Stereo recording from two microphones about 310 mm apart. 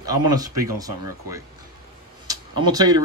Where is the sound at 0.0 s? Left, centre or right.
Centre.